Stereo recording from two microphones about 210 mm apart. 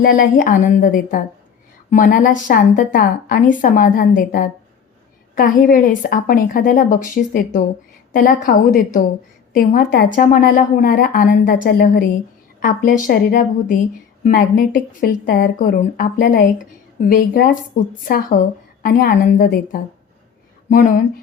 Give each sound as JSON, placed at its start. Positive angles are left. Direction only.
{"t": 0.0, "sound": "a woman's voice", "side_deg": 40}